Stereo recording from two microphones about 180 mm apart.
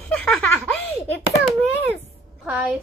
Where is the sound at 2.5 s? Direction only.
5° right (ahead or behind).